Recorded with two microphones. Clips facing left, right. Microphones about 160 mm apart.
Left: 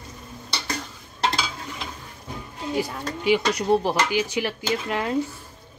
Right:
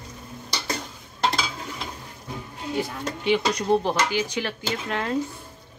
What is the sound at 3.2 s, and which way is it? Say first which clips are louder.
Speech: left 2 dB; 5° left (ahead or behind).